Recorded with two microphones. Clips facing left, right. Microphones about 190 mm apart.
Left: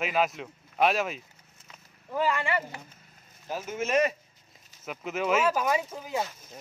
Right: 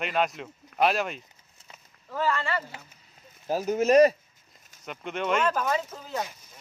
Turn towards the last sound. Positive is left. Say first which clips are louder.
# left 1 dB
turn(degrees=15)  # may be behind; listen again after turning